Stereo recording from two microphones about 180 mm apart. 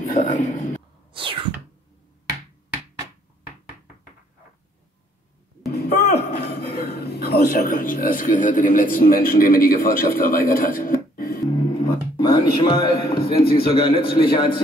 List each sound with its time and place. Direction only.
0.1 s speech: 45° left (ahead or behind)
1.1 s a sound: 30° right (ahead or behind)
5.7 s speech: 65° left (ahead or behind)
12.2 s a man's voice: 30° left (ahead or behind)